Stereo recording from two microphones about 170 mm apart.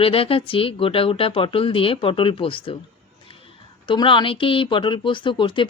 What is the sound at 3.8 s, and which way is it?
Speech, 30° left (ahead or behind).